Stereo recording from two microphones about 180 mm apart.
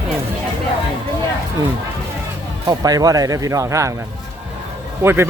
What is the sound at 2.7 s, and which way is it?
Speech, 20° right (ahead or behind).